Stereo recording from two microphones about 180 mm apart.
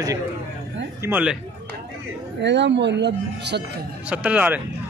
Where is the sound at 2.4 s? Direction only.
75° right (ahead or behind).